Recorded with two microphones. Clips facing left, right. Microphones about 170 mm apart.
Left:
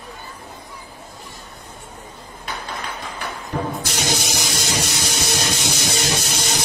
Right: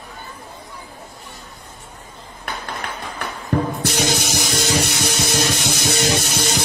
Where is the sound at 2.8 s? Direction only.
60° right (ahead or behind).